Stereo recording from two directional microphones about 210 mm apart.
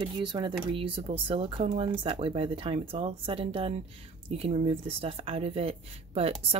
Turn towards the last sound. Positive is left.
turn(degrees=-30)  # may be behind; listen again after turning